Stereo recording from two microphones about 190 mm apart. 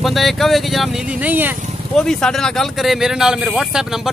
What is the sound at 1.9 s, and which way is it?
Speech, 5° left (ahead or behind).